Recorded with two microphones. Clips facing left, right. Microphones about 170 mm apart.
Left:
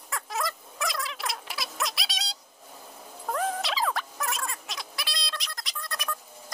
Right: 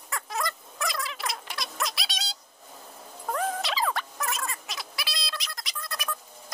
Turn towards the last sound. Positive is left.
turn(degrees=0)  # may be behind; listen again after turning